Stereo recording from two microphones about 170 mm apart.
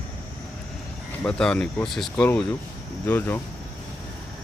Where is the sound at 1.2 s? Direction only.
5° left (ahead or behind).